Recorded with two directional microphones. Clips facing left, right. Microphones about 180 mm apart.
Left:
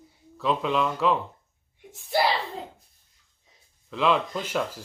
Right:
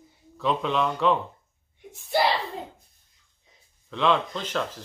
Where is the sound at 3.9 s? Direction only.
5° left (ahead or behind).